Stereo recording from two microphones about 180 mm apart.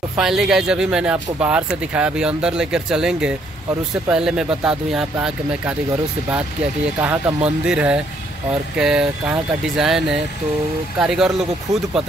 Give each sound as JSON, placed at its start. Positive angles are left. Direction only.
{"t": 0.2, "sound": "speech", "side_deg": 0}
{"t": 7.0, "sound": "speech", "side_deg": -10}